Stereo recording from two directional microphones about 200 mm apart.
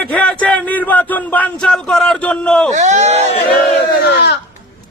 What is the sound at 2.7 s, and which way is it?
Speech, 35° right (ahead or behind).